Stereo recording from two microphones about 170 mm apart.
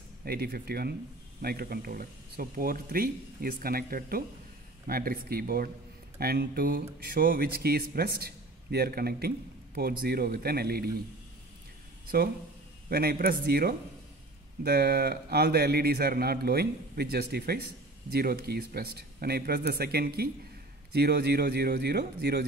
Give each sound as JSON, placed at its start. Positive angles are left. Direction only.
{"t": 0.2, "sound": "a man's voice", "side_deg": -65}
{"t": 12.9, "sound": "a man's voice", "side_deg": -65}